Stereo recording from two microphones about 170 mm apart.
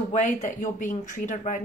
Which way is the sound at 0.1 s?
45° left (ahead or behind).